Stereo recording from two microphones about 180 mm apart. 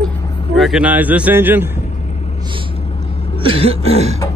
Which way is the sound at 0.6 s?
5° right (ahead or behind).